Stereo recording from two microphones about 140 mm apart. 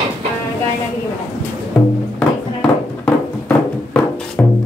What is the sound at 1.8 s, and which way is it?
Music, 10° left (ahead or behind).